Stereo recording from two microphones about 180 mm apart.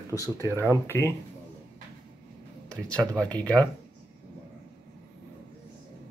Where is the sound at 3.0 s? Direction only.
20° right (ahead or behind).